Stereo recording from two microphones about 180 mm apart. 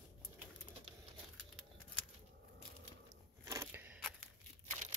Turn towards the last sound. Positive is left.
turn(degrees=-15)  # may be behind; listen again after turning